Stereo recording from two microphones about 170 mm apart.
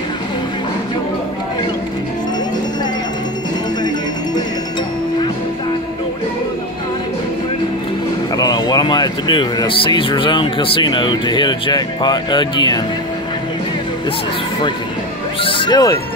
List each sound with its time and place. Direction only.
8.4 s speech: 25° left (ahead or behind)
15.4 s speech: 30° left (ahead or behind)